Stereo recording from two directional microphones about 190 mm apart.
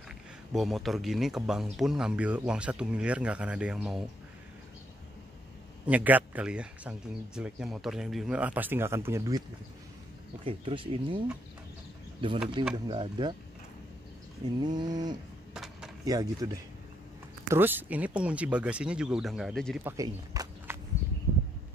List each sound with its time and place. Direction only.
0.5 s speech: centre (ahead or behind)
5.9 s speech: 10° right (ahead or behind)
10.4 s speech: 25° right (ahead or behind)
12.7 s speech: 25° right (ahead or behind)
14.6 s speech: 20° right (ahead or behind)
15.5 s a sound: 5° right (ahead or behind)
16.1 s speech: 20° right (ahead or behind); by 19.8 s centre (ahead or behind)
19.8 s walk: 15° right (ahead or behind)